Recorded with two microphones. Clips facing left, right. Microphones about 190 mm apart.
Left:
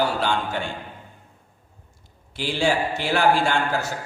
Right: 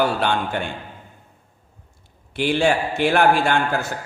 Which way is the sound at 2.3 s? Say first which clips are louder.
Right 4 dB; 60° right (ahead or behind).